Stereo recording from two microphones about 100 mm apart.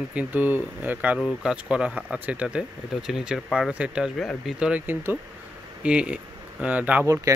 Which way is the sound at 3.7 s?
10° right (ahead or behind).